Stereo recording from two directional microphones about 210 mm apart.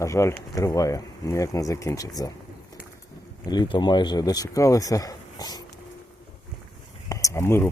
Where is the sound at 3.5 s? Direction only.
20° left (ahead or behind).